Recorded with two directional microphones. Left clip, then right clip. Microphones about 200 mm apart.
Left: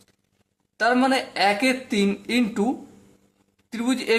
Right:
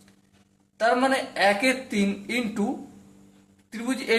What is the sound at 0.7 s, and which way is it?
Speech, 30° left (ahead or behind).